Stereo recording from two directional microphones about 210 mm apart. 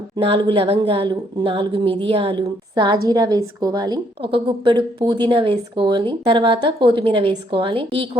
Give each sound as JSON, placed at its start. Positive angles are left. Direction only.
{"t": 0.2, "sound": "a woman's voice", "side_deg": -25}